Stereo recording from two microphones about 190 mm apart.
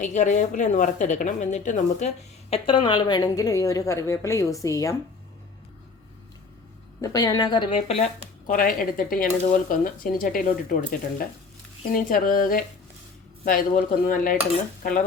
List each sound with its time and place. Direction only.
0.0 s a woman's voice: 40° left (ahead or behind); by 4.9 s 15° left (ahead or behind)
7.0 s a woman's voice: 20° left (ahead or behind)
8.4 s speech: 45° left (ahead or behind)
11.9 s speech: 45° left (ahead or behind)